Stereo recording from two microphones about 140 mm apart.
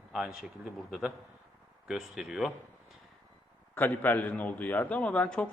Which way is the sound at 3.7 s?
15° left (ahead or behind).